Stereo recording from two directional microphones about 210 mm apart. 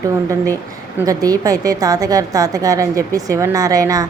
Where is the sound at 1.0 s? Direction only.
15° right (ahead or behind).